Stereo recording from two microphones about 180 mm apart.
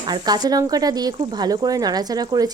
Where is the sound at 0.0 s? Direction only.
25° right (ahead or behind).